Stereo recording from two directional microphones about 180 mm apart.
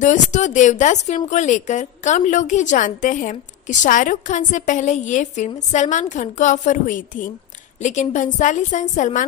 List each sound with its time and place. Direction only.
0.0 s speech: 40° left (ahead or behind)